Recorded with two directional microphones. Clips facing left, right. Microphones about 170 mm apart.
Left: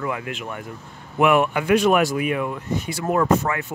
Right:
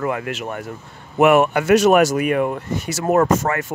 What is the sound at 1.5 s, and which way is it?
Speech, 80° right.